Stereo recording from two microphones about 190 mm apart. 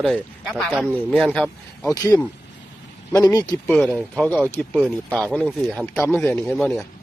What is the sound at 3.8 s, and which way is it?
A man's voice, 5° left (ahead or behind).